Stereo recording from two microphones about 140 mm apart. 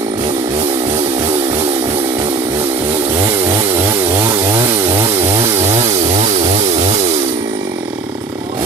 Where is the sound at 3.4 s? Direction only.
20° right (ahead or behind).